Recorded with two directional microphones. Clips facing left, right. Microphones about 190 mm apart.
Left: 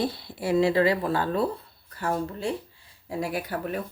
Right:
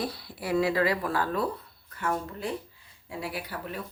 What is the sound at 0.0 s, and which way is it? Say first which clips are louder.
Speech: left 5 dB; 25° left (ahead or behind).